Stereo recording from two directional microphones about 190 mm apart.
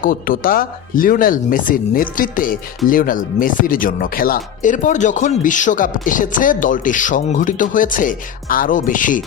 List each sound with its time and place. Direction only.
0.0 s speech: 50° left (ahead or behind)